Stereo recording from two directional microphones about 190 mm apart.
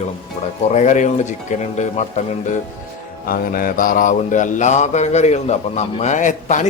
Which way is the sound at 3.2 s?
50° left (ahead or behind).